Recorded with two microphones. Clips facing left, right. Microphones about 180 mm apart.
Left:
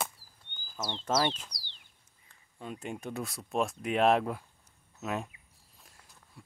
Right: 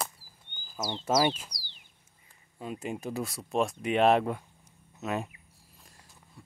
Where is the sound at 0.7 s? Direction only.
5° right (ahead or behind).